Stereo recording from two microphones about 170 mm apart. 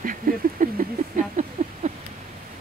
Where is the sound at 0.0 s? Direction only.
55° right (ahead or behind).